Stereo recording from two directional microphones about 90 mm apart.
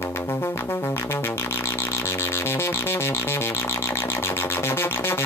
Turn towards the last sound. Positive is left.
turn(degrees=25)  # may be behind; listen again after turning